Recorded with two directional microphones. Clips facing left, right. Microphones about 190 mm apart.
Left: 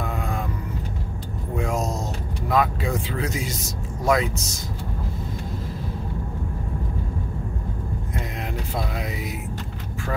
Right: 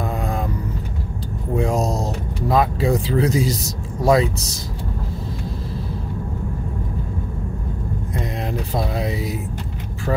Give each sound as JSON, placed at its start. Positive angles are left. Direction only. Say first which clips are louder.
{"t": 1.6, "sound": "speech", "louder": "right 5 dB", "side_deg": -35}
{"t": 8.7, "sound": "speech", "louder": "right 6 dB", "side_deg": -35}